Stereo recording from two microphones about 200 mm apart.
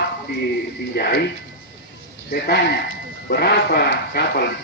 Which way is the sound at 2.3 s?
50° left (ahead or behind).